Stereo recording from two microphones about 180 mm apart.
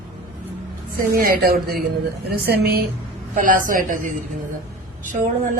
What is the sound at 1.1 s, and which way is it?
A woman's voice, 55° right (ahead or behind).